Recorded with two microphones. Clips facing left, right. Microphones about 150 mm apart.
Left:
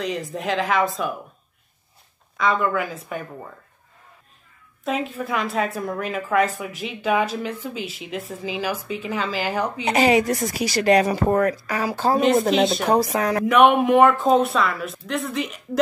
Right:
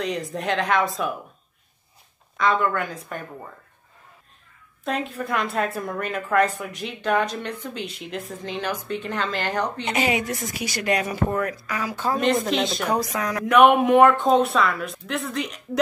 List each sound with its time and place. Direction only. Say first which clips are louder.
0.0 s a woman's voice: even; centre (ahead or behind)
2.3 s a woman's voice: even; centre (ahead or behind)
4.8 s a woman's voice: left 2 dB; centre (ahead or behind)
9.8 s speech: left 9 dB; 35° left (ahead or behind)
12.4 s a woman's voice: left 5 dB; centre (ahead or behind)
12.8 s speech: left 5 dB; 30° left (ahead or behind)
13.5 s a woman's voice: right 1 dB; centre (ahead or behind)